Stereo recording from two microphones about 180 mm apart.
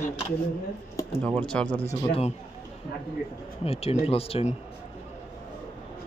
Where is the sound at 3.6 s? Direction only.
35° left (ahead or behind).